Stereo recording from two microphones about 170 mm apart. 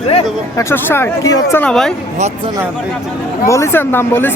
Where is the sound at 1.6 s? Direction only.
5° left (ahead or behind).